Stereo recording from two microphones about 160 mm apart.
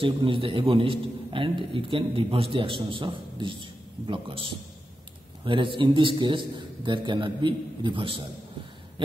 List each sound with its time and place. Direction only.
0.0 s a man's voice: 35° right (ahead or behind)